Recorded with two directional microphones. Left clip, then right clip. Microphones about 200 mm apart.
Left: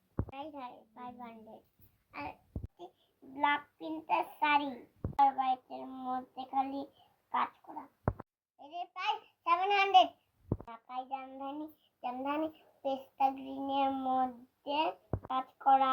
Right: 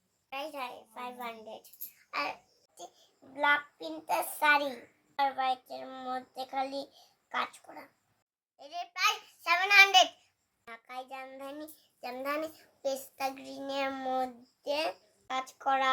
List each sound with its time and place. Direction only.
0.3 s a child's voice: 25° right (ahead or behind)
3.3 s a child's voice: 25° right (ahead or behind)
8.5 s a child's voice: 25° right (ahead or behind)